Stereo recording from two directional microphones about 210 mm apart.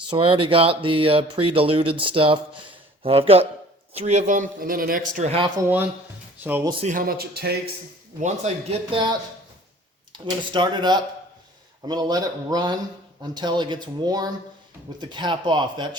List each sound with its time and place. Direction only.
0.1 s speech: 25° right (ahead or behind)
5.5 s speech: 10° right (ahead or behind)
6.8 s speech: 40° right (ahead or behind)
8.2 s speech: 30° right (ahead or behind)